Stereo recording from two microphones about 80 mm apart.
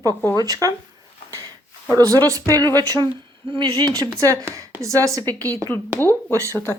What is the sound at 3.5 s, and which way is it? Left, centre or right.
Speech, right.